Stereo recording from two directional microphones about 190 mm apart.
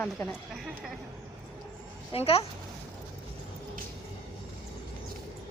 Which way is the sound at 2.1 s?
30° left (ahead or behind).